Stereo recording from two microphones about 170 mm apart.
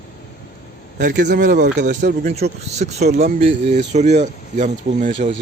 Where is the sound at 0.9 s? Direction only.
80° right.